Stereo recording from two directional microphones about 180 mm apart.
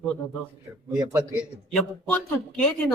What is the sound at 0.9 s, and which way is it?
Speech, 20° right (ahead or behind).